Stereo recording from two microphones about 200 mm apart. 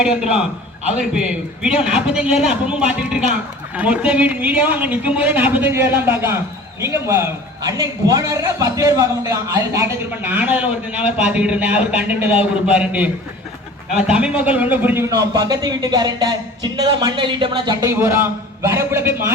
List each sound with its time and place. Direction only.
0.0 s a man's voice: 5° right (ahead or behind)
14.1 s a man's voice: 5° right (ahead or behind)